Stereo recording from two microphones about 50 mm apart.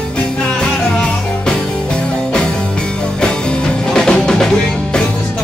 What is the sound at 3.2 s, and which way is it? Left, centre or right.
Music, centre.